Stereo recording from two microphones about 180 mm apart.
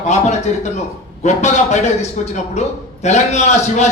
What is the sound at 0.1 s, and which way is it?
A man's voice, 40° left (ahead or behind).